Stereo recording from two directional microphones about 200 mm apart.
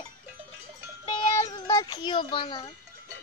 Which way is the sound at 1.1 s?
25° left (ahead or behind).